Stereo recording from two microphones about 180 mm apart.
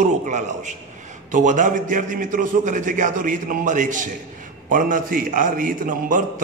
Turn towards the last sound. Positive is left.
turn(degrees=-50)  # may be behind; listen again after turning